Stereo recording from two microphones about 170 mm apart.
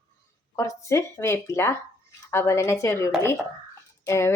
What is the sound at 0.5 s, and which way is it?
Speech, 20° left (ahead or behind).